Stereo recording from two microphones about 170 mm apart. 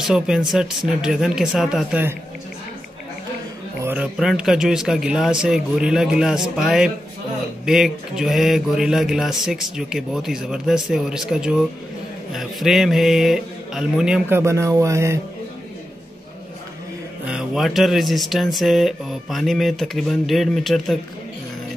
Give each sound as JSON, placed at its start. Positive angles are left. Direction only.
{"t": 0.0, "sound": "speech", "side_deg": -5}
{"t": 3.8, "sound": "speech", "side_deg": -5}
{"t": 14.4, "sound": "music", "side_deg": -15}
{"t": 17.3, "sound": "speech", "side_deg": -5}